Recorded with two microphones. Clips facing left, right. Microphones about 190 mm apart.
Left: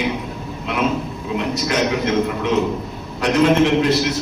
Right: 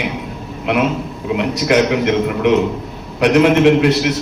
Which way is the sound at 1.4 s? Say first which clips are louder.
Right 6 dB; 65° right (ahead or behind).